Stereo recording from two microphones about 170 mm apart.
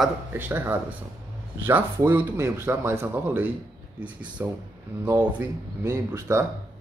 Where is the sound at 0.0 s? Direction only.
10° right (ahead or behind).